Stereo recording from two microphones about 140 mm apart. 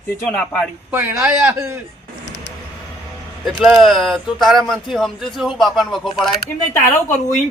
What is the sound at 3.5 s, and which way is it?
Speech, 5° right (ahead or behind).